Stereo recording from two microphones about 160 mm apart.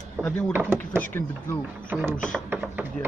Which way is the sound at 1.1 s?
15° left (ahead or behind).